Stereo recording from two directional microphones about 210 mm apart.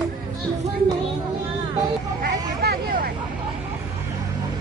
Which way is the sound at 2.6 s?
45° right (ahead or behind).